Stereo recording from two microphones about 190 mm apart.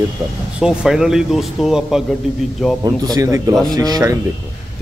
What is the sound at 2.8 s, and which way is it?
A man's voice, 20° right (ahead or behind).